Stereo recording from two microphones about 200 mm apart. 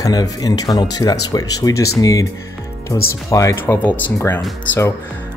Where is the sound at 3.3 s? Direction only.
15° left (ahead or behind).